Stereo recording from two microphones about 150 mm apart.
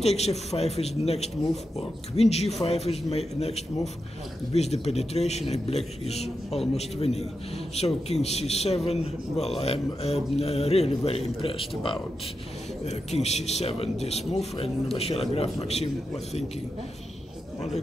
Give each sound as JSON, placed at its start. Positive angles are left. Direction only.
{"t": 0.0, "sound": "a man's voice", "side_deg": 45}
{"t": 7.7, "sound": "a man's voice", "side_deg": 45}
{"t": 12.8, "sound": "a man's voice", "side_deg": 45}